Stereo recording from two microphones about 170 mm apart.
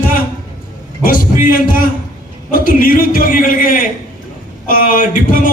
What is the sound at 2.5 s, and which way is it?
Speech, 55° left (ahead or behind).